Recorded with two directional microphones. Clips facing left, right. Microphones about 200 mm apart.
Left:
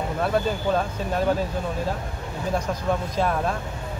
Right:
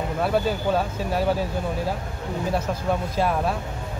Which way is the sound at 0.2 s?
5° right (ahead or behind).